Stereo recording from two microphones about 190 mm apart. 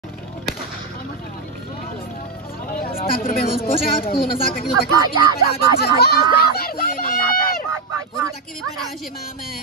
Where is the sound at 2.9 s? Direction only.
50° left (ahead or behind).